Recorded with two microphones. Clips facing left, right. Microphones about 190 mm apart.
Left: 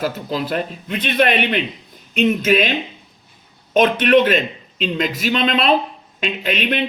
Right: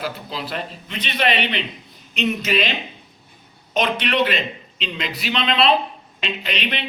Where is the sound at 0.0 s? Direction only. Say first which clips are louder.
Left 6 dB; 45° left (ahead or behind).